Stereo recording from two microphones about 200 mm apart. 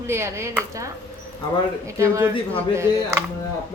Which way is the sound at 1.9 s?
15° right (ahead or behind).